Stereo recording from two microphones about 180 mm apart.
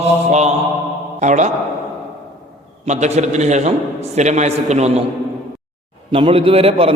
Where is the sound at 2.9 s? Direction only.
40° right (ahead or behind).